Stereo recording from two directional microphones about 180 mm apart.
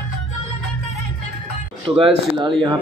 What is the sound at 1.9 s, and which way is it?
Speech, 25° right (ahead or behind).